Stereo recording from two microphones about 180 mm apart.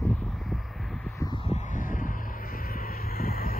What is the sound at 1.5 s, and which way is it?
Vehicle, 45° left (ahead or behind).